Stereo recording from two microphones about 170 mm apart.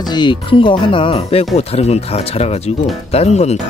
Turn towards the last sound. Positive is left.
turn(degrees=40)  # may be behind; listen again after turning